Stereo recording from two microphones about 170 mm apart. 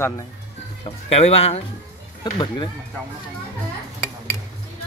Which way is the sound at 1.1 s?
35° left (ahead or behind).